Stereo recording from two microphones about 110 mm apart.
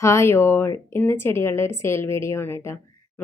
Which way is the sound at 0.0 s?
25° left (ahead or behind).